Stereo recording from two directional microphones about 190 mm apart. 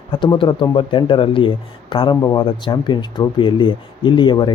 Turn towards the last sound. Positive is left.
turn(degrees=25)  # may be behind; listen again after turning